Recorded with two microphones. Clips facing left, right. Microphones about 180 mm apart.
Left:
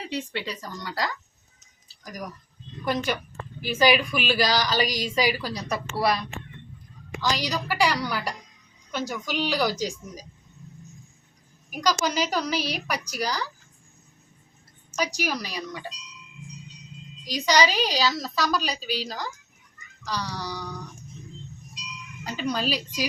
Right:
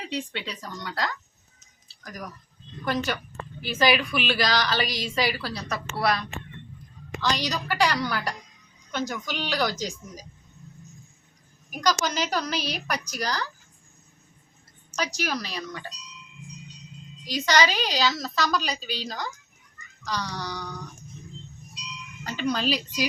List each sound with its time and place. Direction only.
0.0 s a woman's voice: 5° left (ahead or behind)
11.7 s a woman's voice: 10° left (ahead or behind)
14.9 s a woman's voice: 10° left (ahead or behind)
17.3 s a woman's voice: 15° left (ahead or behind)
22.2 s a woman's voice: 10° left (ahead or behind)